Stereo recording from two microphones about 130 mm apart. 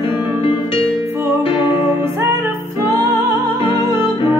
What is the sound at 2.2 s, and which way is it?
Music, 20° right (ahead or behind).